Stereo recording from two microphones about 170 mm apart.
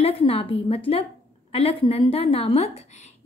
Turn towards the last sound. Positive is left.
turn(degrees=40)  # may be behind; listen again after turning